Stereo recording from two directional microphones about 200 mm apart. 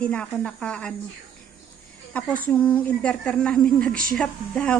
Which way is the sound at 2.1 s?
5° left (ahead or behind).